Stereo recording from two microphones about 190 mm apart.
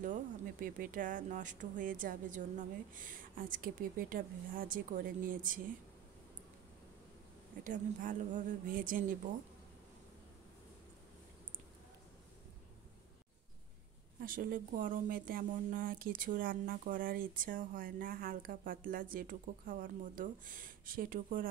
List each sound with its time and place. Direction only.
0.0 s speech: 45° right (ahead or behind)
7.6 s speech: 45° right (ahead or behind)
14.2 s speech: 50° right (ahead or behind)